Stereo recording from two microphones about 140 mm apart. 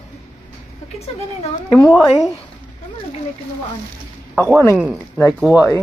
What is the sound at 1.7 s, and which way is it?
Speech, 20° left (ahead or behind).